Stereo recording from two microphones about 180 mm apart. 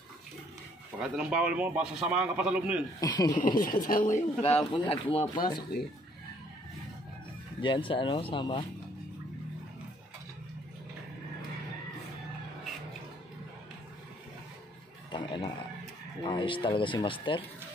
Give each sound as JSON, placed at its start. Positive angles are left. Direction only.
{"t": 1.0, "sound": "a man's voice", "side_deg": -5}
{"t": 3.0, "sound": "speech", "side_deg": 20}
{"t": 3.3, "sound": "a man's voice", "side_deg": 50}
{"t": 4.7, "sound": "speech", "side_deg": 30}
{"t": 7.6, "sound": "speech", "side_deg": 30}
{"t": 15.0, "sound": "a sound", "side_deg": 25}
{"t": 16.3, "sound": "speech", "side_deg": 30}